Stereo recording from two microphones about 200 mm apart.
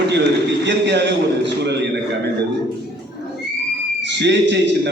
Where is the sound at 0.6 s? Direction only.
60° right (ahead or behind).